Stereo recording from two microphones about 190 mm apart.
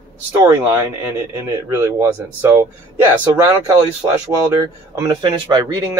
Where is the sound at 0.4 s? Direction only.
15° right (ahead or behind).